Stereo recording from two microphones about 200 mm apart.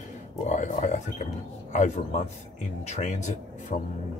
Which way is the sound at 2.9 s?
35° left (ahead or behind).